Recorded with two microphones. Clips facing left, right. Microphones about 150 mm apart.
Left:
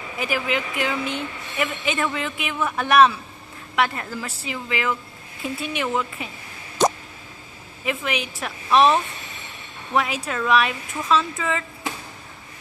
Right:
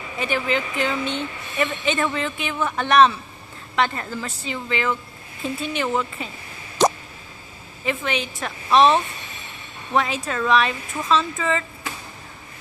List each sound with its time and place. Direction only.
0.2 s speech: 5° left (ahead or behind)
7.8 s speech: centre (ahead or behind)